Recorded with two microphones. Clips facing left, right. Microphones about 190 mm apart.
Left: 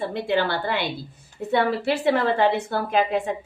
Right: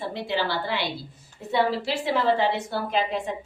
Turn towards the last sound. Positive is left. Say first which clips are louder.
# left 4 dB
turn(degrees=55)  # may be behind; listen again after turning